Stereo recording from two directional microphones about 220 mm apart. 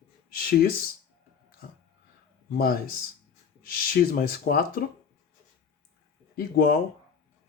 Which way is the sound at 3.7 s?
45° left (ahead or behind).